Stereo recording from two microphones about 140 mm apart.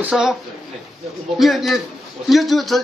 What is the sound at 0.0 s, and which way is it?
Speech, 5° right (ahead or behind).